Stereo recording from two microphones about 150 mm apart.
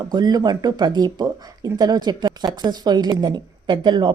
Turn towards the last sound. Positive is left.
turn(degrees=-30)  # may be behind; listen again after turning